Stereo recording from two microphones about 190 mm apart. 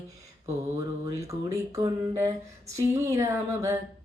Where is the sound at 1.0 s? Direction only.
15° right (ahead or behind).